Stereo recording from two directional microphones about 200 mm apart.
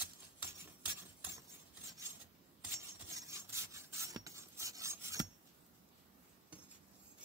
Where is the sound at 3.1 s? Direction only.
15° right (ahead or behind).